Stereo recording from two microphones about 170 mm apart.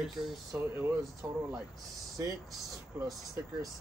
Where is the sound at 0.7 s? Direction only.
15° right (ahead or behind).